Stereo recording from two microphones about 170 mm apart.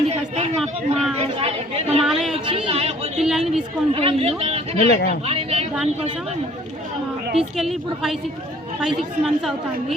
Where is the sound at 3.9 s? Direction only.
35° right (ahead or behind).